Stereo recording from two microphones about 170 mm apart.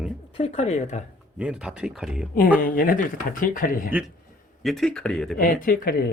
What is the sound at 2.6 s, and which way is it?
A man's voice, 55° left (ahead or behind).